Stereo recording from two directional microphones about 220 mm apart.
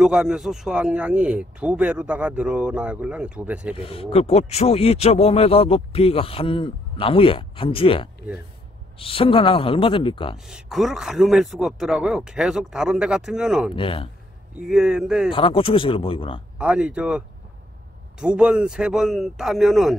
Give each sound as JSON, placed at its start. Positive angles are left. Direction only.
{"t": 0.0, "sound": "speech", "side_deg": -5}
{"t": 3.7, "sound": "speech", "side_deg": 25}
{"t": 10.3, "sound": "speech", "side_deg": 0}
{"t": 13.7, "sound": "speech", "side_deg": 25}
{"t": 14.7, "sound": "speech", "side_deg": -5}
{"t": 15.3, "sound": "speech", "side_deg": 25}
{"t": 16.5, "sound": "speech", "side_deg": -5}
{"t": 18.2, "sound": "speech", "side_deg": -5}